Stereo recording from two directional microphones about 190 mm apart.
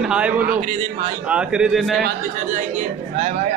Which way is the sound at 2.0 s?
40° right (ahead or behind).